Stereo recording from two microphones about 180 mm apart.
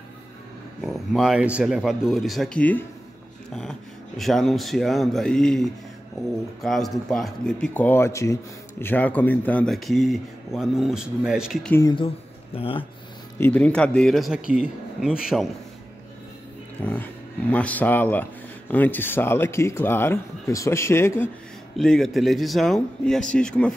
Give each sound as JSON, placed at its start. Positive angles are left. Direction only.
{"t": 0.7, "sound": "speech", "side_deg": 0}
{"t": 4.2, "sound": "speech", "side_deg": 0}
{"t": 12.5, "sound": "speech", "side_deg": 30}
{"t": 13.4, "sound": "speech", "side_deg": 5}
{"t": 16.8, "sound": "speech", "side_deg": 10}
{"t": 21.7, "sound": "speech", "side_deg": 5}